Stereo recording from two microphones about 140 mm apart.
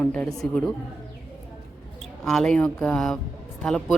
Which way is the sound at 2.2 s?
5° left (ahead or behind).